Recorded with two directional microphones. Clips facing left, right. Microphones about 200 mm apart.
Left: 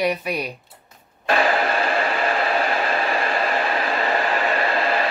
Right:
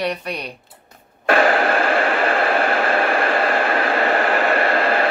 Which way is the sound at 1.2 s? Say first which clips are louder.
Right 4 dB; 50° right (ahead or behind).